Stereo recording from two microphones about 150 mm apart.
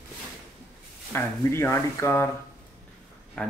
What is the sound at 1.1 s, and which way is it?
Speech, 15° left (ahead or behind).